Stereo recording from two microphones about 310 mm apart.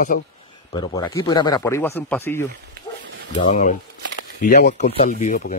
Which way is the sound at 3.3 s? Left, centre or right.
Left.